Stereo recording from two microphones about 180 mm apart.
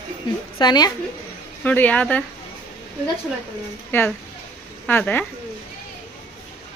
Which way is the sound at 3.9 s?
10° left (ahead or behind).